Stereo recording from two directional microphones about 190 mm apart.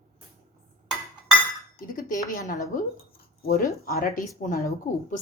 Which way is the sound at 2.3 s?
45° left (ahead or behind).